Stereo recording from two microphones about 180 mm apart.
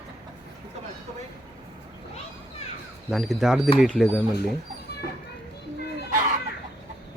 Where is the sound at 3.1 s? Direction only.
Centre (ahead or behind).